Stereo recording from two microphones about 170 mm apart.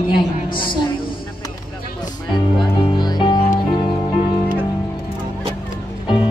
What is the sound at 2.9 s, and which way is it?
Music, 25° left (ahead or behind).